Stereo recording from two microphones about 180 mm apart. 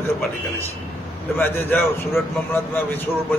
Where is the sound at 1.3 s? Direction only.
10° left (ahead or behind).